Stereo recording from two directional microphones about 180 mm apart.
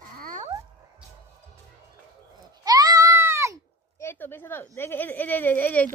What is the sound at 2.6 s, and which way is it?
Goat, 20° right (ahead or behind).